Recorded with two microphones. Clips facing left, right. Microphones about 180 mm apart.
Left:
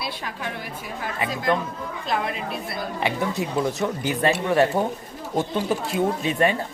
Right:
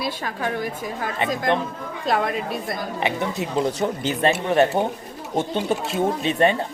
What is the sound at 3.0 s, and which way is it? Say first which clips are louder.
Speech: left 1 dB; 25° right (ahead or behind).